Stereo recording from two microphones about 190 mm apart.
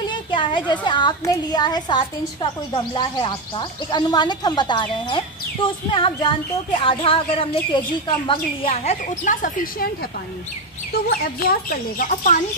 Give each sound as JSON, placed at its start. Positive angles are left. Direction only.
{"t": 0.1, "sound": "a woman's voice", "side_deg": 25}
{"t": 8.6, "sound": "speech", "side_deg": 45}
{"t": 11.1, "sound": "speech", "side_deg": 50}